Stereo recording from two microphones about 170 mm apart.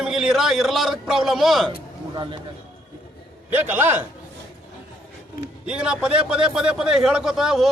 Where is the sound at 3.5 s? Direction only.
10° right (ahead or behind).